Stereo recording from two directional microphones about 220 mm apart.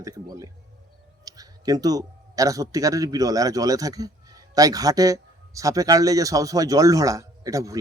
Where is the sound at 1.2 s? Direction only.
15° right (ahead or behind).